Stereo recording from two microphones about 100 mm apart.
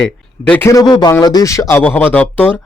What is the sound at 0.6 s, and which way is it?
Speech, 35° left (ahead or behind).